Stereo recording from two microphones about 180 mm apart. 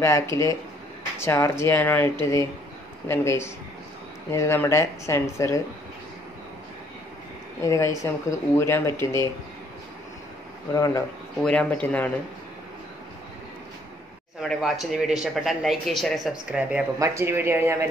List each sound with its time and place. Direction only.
0.0 s speech: 15° left (ahead or behind)
7.6 s speech: 15° left (ahead or behind)
10.7 s speech: 20° left (ahead or behind)
11.4 s speech: 10° left (ahead or behind)
14.5 s speech: centre (ahead or behind)
17.0 s speech: 15° right (ahead or behind)